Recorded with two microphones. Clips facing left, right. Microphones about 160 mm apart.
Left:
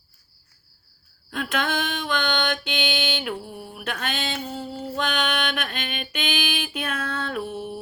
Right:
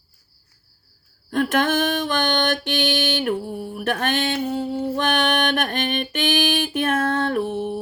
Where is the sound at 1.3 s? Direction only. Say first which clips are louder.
Right 7 dB; 45° right (ahead or behind).